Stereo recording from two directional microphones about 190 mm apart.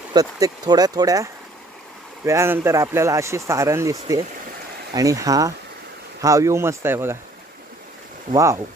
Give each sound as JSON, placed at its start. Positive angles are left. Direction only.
{"t": 0.1, "sound": "speech", "side_deg": -20}
{"t": 8.3, "sound": "speech", "side_deg": -15}